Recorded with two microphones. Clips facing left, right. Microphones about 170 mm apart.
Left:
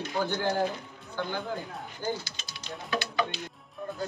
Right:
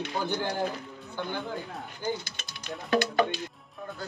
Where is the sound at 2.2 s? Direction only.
55° right (ahead or behind).